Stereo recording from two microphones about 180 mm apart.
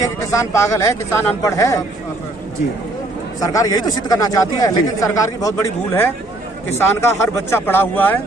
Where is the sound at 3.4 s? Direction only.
20° left (ahead or behind).